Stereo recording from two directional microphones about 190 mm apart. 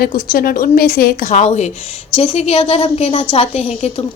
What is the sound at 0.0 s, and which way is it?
A woman's voice, 50° left (ahead or behind).